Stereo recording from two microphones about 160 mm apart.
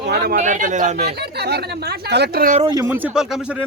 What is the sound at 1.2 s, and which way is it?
Speech, 90° right.